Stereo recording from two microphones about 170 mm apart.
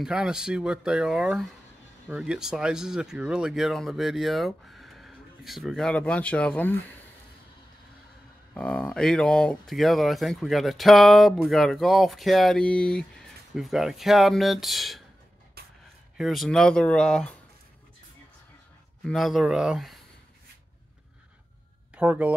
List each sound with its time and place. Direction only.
0.0 s speech: 5° right (ahead or behind)
8.5 s speech: 5° left (ahead or behind)
15.6 s a sound: 65° right (ahead or behind)
16.2 s speech: centre (ahead or behind)
19.0 s speech: centre (ahead or behind)
21.9 s speech: 10° right (ahead or behind)